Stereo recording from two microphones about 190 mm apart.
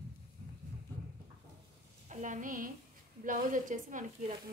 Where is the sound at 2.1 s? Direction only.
40° right (ahead or behind).